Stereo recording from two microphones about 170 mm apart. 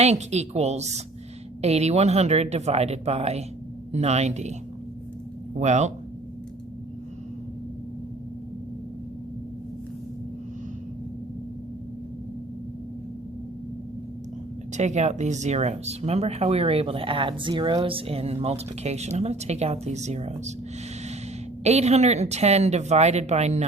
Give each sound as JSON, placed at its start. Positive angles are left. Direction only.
{"t": 0.0, "sound": "speech", "side_deg": -40}
{"t": 5.5, "sound": "speech", "side_deg": -45}
{"t": 14.8, "sound": "speech", "side_deg": -40}
{"t": 21.6, "sound": "speech", "side_deg": -40}